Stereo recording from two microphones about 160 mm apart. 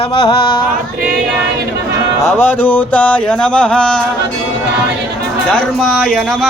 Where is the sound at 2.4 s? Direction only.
10° left (ahead or behind).